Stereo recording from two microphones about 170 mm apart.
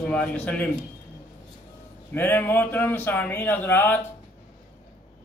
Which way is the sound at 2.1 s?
10° left (ahead or behind).